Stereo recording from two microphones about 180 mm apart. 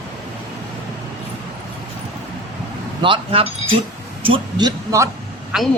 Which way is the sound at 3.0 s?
30° right (ahead or behind).